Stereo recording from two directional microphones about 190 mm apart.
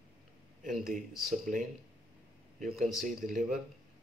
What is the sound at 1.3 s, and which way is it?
Speech, 45° right (ahead or behind).